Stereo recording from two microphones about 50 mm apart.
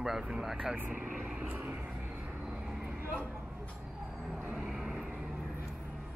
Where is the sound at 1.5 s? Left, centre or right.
Right.